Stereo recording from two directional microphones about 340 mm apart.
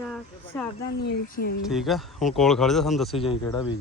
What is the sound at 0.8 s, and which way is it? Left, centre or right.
Speech, left.